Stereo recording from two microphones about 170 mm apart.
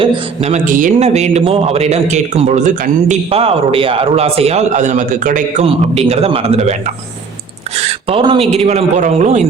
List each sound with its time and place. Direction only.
0.0 s a man's voice: 35° right (ahead or behind)
0.6 s a man's voice: 50° right (ahead or behind)
5.6 s a man's voice: 35° right (ahead or behind)
7.8 s a man's voice: 35° right (ahead or behind)